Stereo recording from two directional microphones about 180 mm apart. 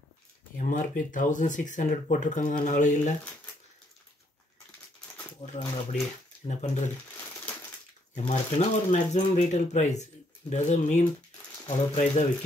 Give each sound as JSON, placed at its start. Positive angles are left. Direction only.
{"t": 0.6, "sound": "speech", "side_deg": 45}
{"t": 5.5, "sound": "speech", "side_deg": 40}
{"t": 8.1, "sound": "speech", "side_deg": 40}